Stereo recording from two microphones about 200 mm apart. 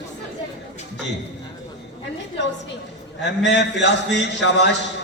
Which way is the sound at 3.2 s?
60° left (ahead or behind).